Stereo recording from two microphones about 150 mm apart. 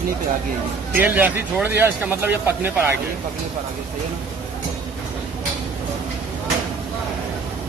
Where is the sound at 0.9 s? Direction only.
10° right (ahead or behind).